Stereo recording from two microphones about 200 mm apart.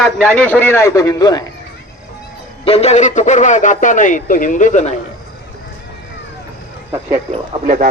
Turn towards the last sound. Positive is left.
turn(degrees=-45)  # may be behind; listen again after turning